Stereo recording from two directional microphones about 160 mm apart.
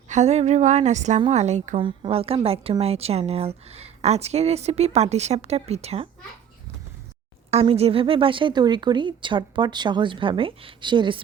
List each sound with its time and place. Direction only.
0.1 s speech: 45° right (ahead or behind)
1.8 s a woman's voice: 35° right (ahead or behind)
7.5 s a woman's voice: 40° right (ahead or behind)